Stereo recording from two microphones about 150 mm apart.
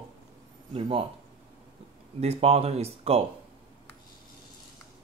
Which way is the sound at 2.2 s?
40° right (ahead or behind).